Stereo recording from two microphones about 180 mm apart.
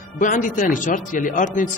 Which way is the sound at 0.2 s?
45° left (ahead or behind).